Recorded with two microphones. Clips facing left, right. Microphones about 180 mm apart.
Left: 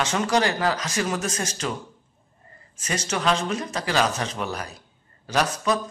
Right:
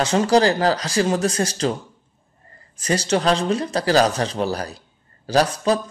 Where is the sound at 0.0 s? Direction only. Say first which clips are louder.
Right 6 dB; 35° right (ahead or behind).